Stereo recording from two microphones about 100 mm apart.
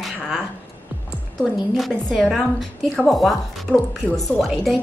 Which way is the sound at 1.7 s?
Centre (ahead or behind).